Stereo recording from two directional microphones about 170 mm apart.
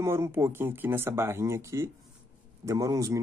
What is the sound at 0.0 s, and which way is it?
Speech, 15° right (ahead or behind).